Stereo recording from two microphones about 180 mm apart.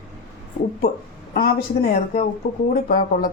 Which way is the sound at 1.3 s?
55° left (ahead or behind).